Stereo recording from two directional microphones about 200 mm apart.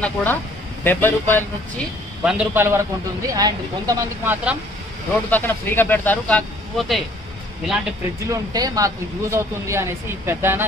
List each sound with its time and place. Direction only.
0.0 s speech: 10° left (ahead or behind)
2.2 s speech: 10° right (ahead or behind)
5.3 s speech: 10° left (ahead or behind)
8.3 s speech: 20° right (ahead or behind)